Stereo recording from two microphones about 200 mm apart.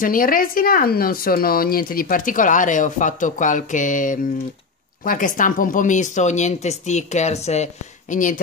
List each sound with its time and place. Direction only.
0.0 s speech: 45° left (ahead or behind)